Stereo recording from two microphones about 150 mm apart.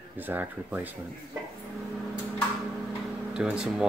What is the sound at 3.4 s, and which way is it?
Speech, 5° right (ahead or behind).